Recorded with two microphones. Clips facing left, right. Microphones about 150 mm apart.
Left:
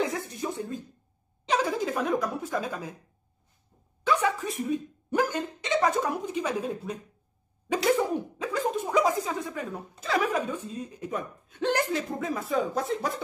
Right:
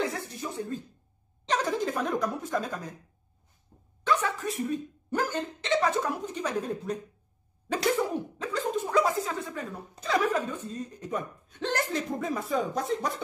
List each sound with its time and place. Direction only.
0.0 s a sound: 15° left (ahead or behind)
1.5 s speech: 10° left (ahead or behind)
4.0 s speech: 10° left (ahead or behind)
8.4 s a sound: 10° left (ahead or behind)
10.0 s speech: 5° left (ahead or behind)
12.2 s speech: centre (ahead or behind)